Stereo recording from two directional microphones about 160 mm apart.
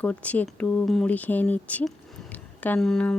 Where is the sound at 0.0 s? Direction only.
10° left (ahead or behind).